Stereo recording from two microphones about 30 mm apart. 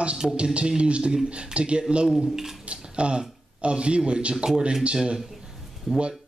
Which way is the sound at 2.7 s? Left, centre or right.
Right.